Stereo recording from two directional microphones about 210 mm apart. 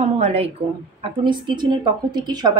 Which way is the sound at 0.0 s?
30° right (ahead or behind).